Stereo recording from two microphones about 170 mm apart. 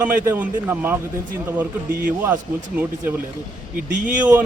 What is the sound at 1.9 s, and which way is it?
Speech, 55° right (ahead or behind).